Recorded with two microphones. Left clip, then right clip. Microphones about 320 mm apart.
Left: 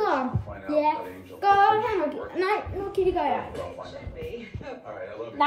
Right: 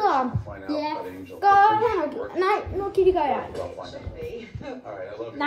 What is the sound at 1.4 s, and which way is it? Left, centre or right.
A child's voice, centre.